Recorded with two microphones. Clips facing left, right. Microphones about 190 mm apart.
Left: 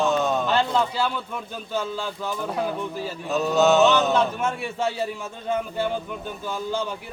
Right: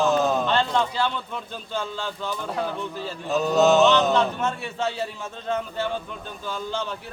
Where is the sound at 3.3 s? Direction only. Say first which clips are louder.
Even; centre (ahead or behind).